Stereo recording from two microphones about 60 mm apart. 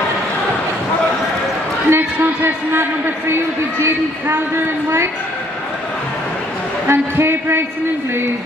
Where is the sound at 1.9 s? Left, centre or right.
Right.